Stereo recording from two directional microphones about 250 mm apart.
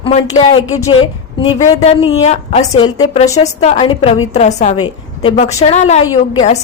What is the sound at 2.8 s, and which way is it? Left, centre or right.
A woman's voice, centre.